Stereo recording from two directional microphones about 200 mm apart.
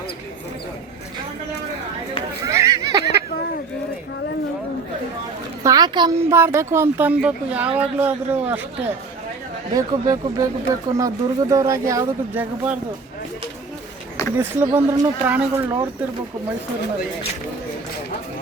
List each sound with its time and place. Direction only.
2.4 s a sound: 15° right (ahead or behind)
5.6 s speech: 20° right (ahead or behind)
9.7 s speech: 15° right (ahead or behind)
14.3 s speech: 10° right (ahead or behind)